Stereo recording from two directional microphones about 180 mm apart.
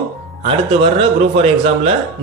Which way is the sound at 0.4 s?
30° right (ahead or behind).